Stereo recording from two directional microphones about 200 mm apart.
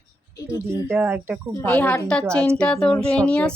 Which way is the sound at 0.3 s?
15° left (ahead or behind).